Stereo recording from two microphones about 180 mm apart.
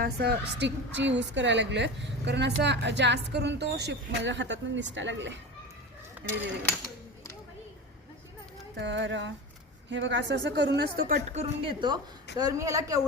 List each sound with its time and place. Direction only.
0.0 s a woman's voice: 65° right (ahead or behind); by 5.4 s 90° right
8.8 s a sound: 85° right
9.9 s a woman's voice: 80° right; by 11.2 s 60° right (ahead or behind)
11.3 s a woman's voice: 40° right (ahead or behind); by 13.0 s 20° right (ahead or behind)